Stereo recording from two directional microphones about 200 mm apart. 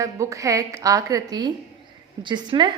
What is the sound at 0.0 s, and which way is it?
A woman's voice, 15° right (ahead or behind).